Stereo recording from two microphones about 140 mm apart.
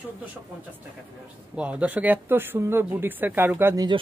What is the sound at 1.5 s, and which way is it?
Speech, 10° right (ahead or behind).